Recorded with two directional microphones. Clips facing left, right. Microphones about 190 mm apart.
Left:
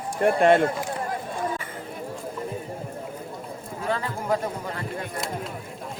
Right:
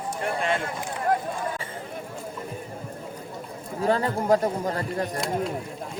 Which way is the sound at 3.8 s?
40° right (ahead or behind).